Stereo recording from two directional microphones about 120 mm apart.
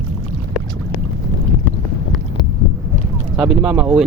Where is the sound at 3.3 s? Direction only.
5° right (ahead or behind).